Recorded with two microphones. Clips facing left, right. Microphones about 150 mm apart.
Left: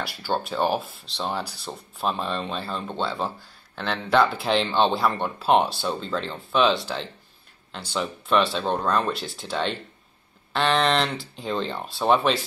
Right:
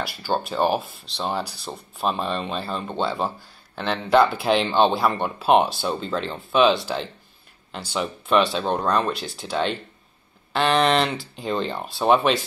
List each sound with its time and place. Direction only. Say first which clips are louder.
0.0 s speech: right 2 dB; 5° right (ahead or behind)